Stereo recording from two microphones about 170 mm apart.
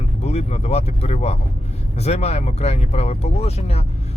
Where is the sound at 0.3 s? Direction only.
40° left (ahead or behind).